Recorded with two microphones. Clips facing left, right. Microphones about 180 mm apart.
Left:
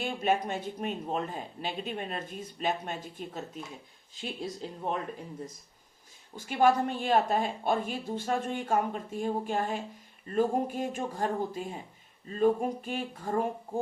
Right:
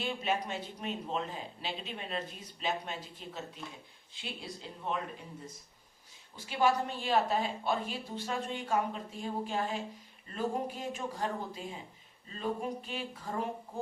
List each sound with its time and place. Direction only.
0.0 s a man's voice: 50° left (ahead or behind)
6.3 s a man's voice: 50° left (ahead or behind)